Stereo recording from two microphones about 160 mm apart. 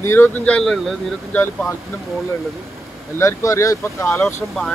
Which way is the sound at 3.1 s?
20° left (ahead or behind).